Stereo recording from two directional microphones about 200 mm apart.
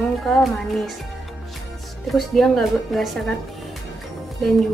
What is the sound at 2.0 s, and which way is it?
Speech, centre (ahead or behind).